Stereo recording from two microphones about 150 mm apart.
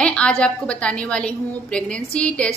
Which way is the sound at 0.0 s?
5° left (ahead or behind).